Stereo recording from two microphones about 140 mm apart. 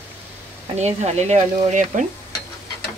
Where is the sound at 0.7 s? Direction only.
55° right (ahead or behind).